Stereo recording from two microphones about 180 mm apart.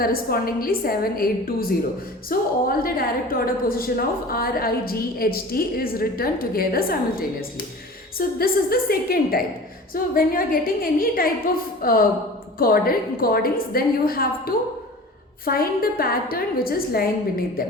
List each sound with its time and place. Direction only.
0.0 s a woman's voice: 55° left (ahead or behind)